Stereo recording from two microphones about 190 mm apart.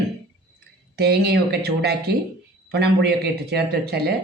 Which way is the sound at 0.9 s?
60° right (ahead or behind).